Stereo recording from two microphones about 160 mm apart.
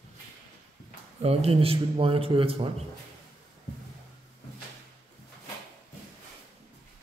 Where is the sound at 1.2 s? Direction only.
40° right (ahead or behind).